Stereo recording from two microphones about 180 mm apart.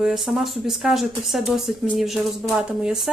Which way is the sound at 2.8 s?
Centre (ahead or behind).